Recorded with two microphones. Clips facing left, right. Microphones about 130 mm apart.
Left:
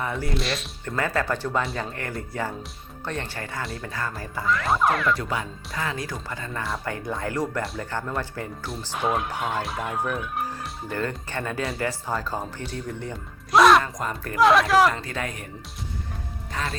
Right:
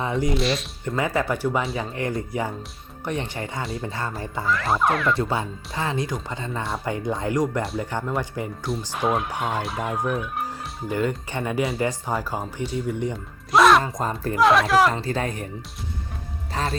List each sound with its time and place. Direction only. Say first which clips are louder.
0.0 s speech: right 5 dB; 20° right (ahead or behind)
0.3 s speech: right 5 dB; centre (ahead or behind)
0.9 s speech: right 2 dB; 15° right (ahead or behind)
4.4 s speech: even; centre (ahead or behind)
5.1 s speech: right 4 dB; 25° right (ahead or behind)
9.0 s speech: right 1 dB; centre (ahead or behind)
10.8 s speech: right 5 dB; 15° right (ahead or behind)
13.5 s music: even; centre (ahead or behind)
13.8 s speech: right 4 dB; 25° right (ahead or behind)
14.3 s speech: even; centre (ahead or behind)
14.9 s speech: right 5 dB; 30° right (ahead or behind)
16.5 s music: right 4 dB; 35° right (ahead or behind)